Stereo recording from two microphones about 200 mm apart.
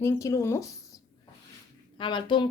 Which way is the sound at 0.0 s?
15° left (ahead or behind).